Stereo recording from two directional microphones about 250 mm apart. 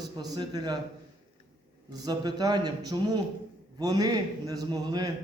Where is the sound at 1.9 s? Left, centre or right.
Centre.